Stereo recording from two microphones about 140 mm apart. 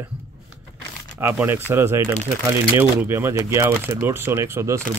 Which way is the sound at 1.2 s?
15° right (ahead or behind).